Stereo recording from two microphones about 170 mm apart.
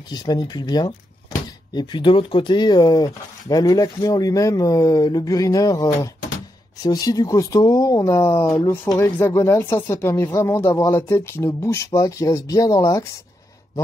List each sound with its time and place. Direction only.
0.1 s speech: 25° left (ahead or behind)